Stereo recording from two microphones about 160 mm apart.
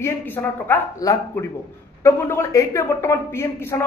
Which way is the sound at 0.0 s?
10° left (ahead or behind).